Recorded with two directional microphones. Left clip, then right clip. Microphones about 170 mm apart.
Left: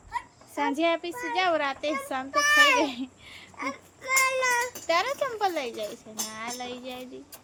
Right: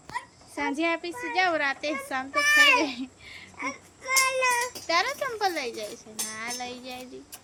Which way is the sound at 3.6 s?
25° left (ahead or behind).